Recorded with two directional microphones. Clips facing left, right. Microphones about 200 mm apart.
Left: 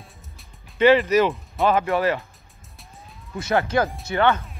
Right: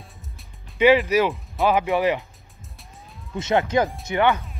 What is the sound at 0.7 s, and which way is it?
Speech, 10° right (ahead or behind).